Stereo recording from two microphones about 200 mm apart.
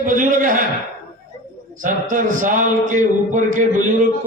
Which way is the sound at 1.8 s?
40° right (ahead or behind).